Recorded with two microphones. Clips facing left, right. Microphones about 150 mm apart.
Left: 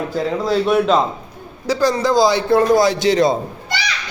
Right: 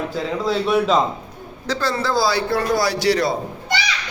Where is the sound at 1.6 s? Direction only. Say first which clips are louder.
Left 6 dB; 15° left (ahead or behind).